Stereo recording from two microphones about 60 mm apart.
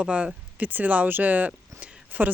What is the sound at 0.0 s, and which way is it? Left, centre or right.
Speech, centre.